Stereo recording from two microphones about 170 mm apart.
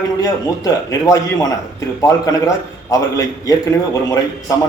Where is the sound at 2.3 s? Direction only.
20° left (ahead or behind).